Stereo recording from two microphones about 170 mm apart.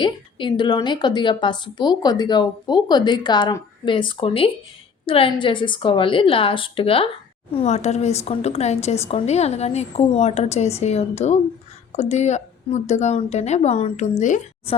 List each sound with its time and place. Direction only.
0.0 s a woman's voice: 30° left (ahead or behind); by 14.8 s 45° left (ahead or behind)